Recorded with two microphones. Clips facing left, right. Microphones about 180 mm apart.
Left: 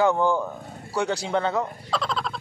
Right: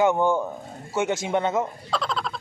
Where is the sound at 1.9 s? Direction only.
Centre (ahead or behind).